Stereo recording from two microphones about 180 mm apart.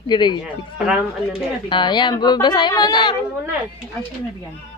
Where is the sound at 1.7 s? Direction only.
25° left (ahead or behind).